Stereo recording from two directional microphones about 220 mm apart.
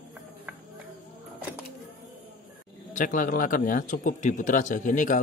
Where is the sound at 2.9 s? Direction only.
35° left (ahead or behind).